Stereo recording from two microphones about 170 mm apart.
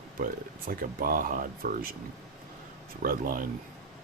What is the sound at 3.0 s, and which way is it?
Speech, 55° right (ahead or behind).